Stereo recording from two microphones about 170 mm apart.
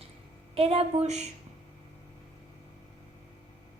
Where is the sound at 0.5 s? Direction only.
35° right (ahead or behind).